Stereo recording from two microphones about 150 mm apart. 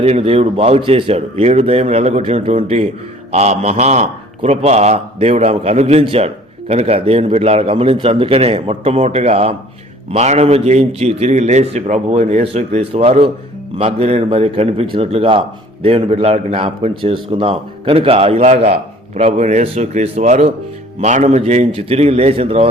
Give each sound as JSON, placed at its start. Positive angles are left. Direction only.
{"t": 0.0, "sound": "a man's voice", "side_deg": -40}